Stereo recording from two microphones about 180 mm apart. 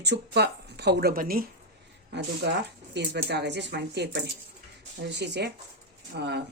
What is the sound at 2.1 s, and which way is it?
A woman's voice, 70° right (ahead or behind).